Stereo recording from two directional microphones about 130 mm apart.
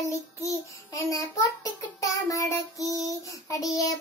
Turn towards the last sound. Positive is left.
turn(degrees=25)  # may be behind; listen again after turning